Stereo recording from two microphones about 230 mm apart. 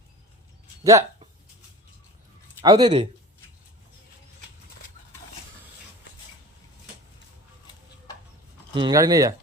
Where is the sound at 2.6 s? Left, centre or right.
Right.